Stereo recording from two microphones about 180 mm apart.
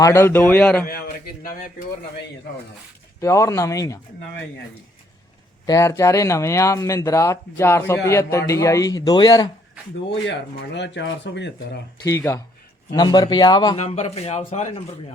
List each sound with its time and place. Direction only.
0.0 s speech: 15° left (ahead or behind)
0.9 s a man's voice: 55° left (ahead or behind)
3.2 s speech: 15° left (ahead or behind)
5.6 s speech: 15° left (ahead or behind)
10.8 s speech: 75° left (ahead or behind)
12.0 s speech: 15° left (ahead or behind)
13.7 s a man's voice: 40° left (ahead or behind)